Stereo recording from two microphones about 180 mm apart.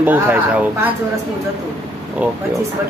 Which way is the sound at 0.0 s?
10° right (ahead or behind).